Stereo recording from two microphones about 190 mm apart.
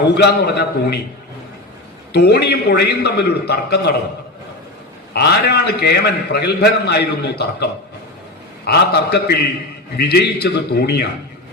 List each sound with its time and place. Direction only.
0.1 s a man's voice: 60° left (ahead or behind)
2.1 s a man's voice: 60° left (ahead or behind)
5.1 s a man's voice: 60° left (ahead or behind)